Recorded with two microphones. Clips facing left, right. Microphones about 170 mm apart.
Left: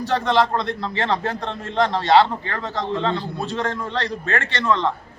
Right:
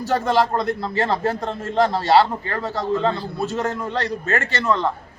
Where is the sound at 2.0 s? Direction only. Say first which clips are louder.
Left 3 dB; 40° right (ahead or behind).